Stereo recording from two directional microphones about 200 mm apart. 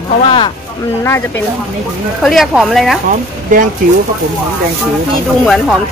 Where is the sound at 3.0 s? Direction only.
40° right (ahead or behind).